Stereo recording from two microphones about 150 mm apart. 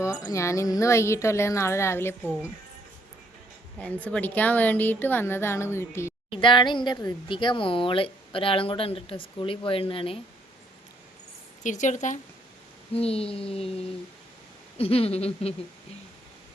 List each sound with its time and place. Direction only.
0.3 s a woman's voice: 20° left (ahead or behind)
3.8 s a woman's voice: 10° left (ahead or behind)
6.4 s a woman's voice: 30° left (ahead or behind)
11.6 s a woman's voice: 55° left (ahead or behind)
12.9 s a woman's voice: 40° left (ahead or behind)
14.8 s a woman's voice: 40° left (ahead or behind)